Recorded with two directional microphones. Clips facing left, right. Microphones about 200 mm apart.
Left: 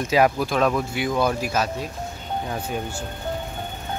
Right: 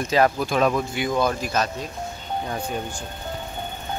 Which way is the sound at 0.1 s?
5° left (ahead or behind).